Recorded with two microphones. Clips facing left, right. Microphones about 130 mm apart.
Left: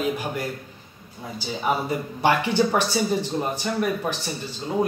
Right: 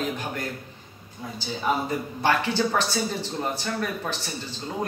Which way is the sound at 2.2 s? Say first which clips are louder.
Left 3 dB; 15° left (ahead or behind).